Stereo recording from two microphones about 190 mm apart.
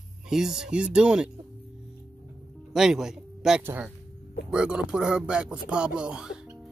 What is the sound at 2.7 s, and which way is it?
Speech, 5° right (ahead or behind).